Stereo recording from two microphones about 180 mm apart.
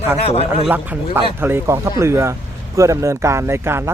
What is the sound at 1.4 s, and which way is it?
A man's voice, 10° right (ahead or behind).